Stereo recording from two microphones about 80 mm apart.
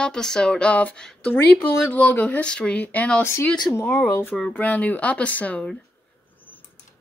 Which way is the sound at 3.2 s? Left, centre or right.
Left.